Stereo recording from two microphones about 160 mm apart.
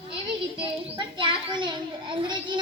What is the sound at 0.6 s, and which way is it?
A child's voice, 30° right (ahead or behind).